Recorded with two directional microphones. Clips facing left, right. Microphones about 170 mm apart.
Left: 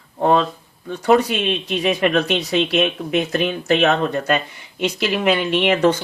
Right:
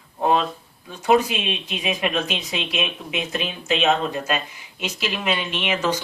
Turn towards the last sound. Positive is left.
turn(degrees=55)  # may be behind; listen again after turning